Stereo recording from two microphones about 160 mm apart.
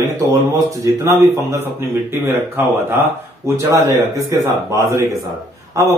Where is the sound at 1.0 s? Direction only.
20° right (ahead or behind).